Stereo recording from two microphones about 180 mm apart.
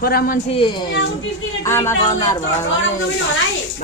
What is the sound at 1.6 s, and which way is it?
Speech, 15° left (ahead or behind).